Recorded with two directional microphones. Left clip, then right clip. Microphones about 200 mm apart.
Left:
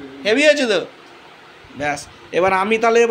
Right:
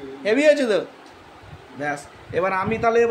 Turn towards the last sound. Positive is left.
turn(degrees=15)  # may be behind; listen again after turning